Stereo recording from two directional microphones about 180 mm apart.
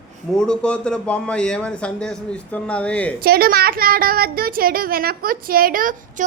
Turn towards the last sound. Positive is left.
turn(degrees=-50)  # may be behind; listen again after turning